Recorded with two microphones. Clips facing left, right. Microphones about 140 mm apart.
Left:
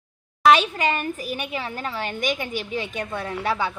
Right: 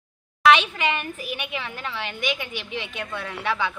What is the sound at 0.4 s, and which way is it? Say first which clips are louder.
A woman's voice: left 1 dB; 40° left (ahead or behind).